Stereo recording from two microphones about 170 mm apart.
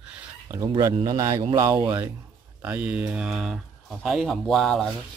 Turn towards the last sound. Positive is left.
turn(degrees=0)  # may be behind; listen again after turning